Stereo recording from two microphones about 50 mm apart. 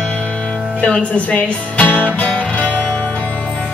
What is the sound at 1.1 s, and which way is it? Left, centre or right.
Speech, left.